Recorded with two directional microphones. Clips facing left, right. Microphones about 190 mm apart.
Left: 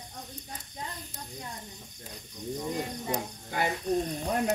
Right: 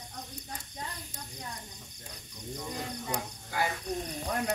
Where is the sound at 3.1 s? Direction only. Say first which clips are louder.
Left 3 dB; 20° left (ahead or behind).